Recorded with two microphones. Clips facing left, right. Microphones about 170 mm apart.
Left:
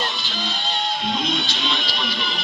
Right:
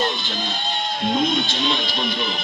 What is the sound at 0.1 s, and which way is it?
Music, 50° right (ahead or behind).